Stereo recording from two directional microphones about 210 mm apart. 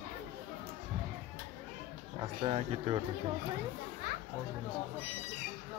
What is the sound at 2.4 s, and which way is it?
Speech, 25° right (ahead or behind).